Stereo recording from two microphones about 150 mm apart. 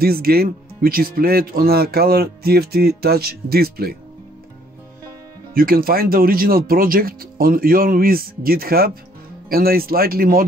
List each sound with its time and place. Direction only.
0.0 s speech: 90° right
5.5 s speech: 80° right